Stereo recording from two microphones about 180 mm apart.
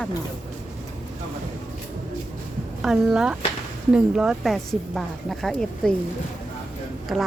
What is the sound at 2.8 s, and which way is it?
A woman's voice, 5° right (ahead or behind).